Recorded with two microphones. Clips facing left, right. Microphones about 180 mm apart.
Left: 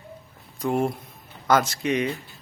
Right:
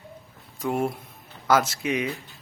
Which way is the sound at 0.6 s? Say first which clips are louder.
Left 2 dB; 5° right (ahead or behind).